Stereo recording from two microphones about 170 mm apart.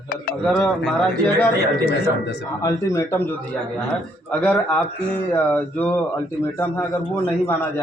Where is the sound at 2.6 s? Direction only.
20° left (ahead or behind).